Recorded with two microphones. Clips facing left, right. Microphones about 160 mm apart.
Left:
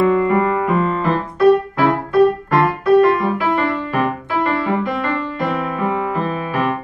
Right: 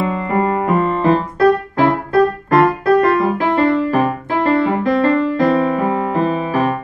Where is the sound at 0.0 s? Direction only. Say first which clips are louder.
Left 3 dB; 30° right (ahead or behind).